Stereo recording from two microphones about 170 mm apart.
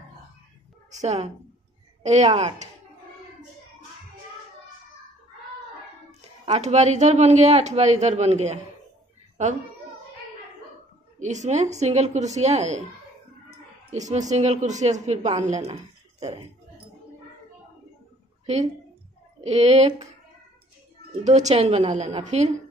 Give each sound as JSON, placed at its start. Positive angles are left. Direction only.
{"t": 0.9, "sound": "speech", "side_deg": -40}
{"t": 6.4, "sound": "speech", "side_deg": -40}
{"t": 11.1, "sound": "a woman's voice", "side_deg": -45}
{"t": 13.9, "sound": "a woman's voice", "side_deg": -45}
{"t": 18.4, "sound": "a sound", "side_deg": -40}
{"t": 19.4, "sound": "speech", "side_deg": -40}
{"t": 21.2, "sound": "speech", "side_deg": -45}